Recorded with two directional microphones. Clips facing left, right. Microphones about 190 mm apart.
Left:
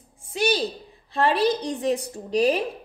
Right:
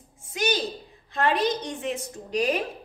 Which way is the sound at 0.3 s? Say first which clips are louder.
Left 3 dB; 30° left (ahead or behind).